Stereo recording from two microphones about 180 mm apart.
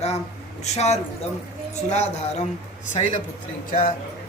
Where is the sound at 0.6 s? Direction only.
40° left (ahead or behind).